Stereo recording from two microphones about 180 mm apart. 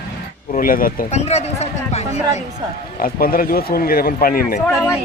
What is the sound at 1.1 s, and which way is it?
Speech, 35° left (ahead or behind).